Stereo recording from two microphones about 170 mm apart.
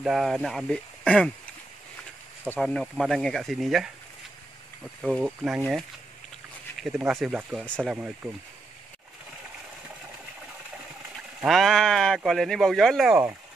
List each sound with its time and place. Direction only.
0.0 s speech: centre (ahead or behind)
2.4 s speech: 5° left (ahead or behind)
5.0 s speech: centre (ahead or behind)
6.8 s speech: 5° right (ahead or behind)
7.9 s speech: 5° right (ahead or behind)
11.4 s speech: centre (ahead or behind)
13.1 s speech: 15° right (ahead or behind)